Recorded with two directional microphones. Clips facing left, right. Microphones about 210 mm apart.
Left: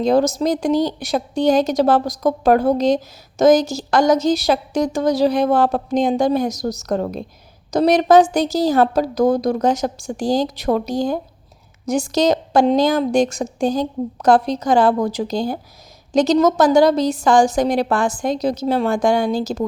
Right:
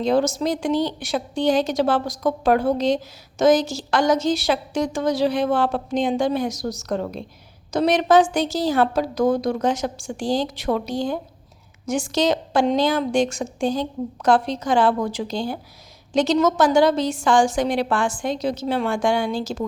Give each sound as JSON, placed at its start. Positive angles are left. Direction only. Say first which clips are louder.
{"t": 0.0, "sound": "speech", "louder": "left 4 dB", "side_deg": 40}